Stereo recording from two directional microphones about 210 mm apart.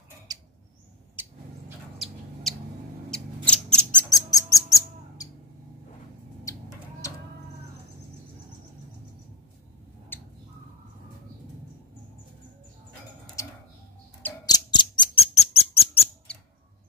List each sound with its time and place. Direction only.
0.3 s rodents: 15° right (ahead or behind)
3.1 s mouse: 5° left (ahead or behind)
4.1 s bird: 15° left (ahead or behind)
6.5 s chicken: 15° left (ahead or behind)
10.1 s bird: 10° left (ahead or behind)
14.2 s bird: 20° left (ahead or behind)
16.3 s a sound: 5° left (ahead or behind)